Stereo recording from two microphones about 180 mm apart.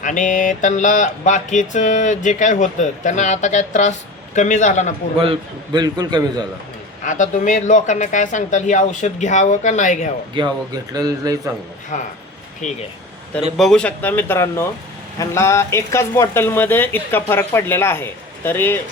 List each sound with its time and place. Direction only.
0.0 s speech: 45° left (ahead or behind)
5.2 s a man's voice: 25° right (ahead or behind)
7.0 s speech: 45° left (ahead or behind)
10.4 s a man's voice: 25° right (ahead or behind)
11.9 s speech: 45° left (ahead or behind)
13.6 s speech: 5° left (ahead or behind)